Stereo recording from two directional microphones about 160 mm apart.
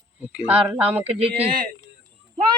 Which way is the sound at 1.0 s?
40° right (ahead or behind).